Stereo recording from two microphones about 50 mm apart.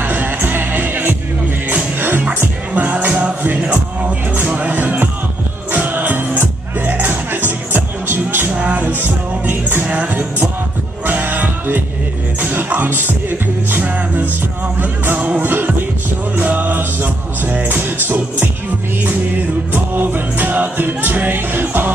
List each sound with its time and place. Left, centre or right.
0.0 s music: right
8.5 s music: right
8.8 s music: right
9.8 s music: right
11.1 s music: right
15.1 s music: right
15.4 s music: right
19.7 s music: right